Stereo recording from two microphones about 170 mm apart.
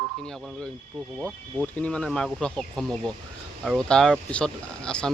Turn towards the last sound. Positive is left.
turn(degrees=5)  # may be behind; listen again after turning